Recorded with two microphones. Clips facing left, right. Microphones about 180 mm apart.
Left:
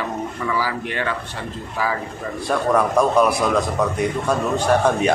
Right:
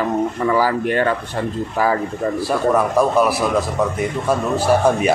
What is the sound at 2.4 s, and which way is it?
A man's voice, 5° right (ahead or behind).